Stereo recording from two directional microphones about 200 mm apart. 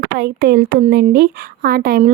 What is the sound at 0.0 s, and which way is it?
Speech, 50° right (ahead or behind).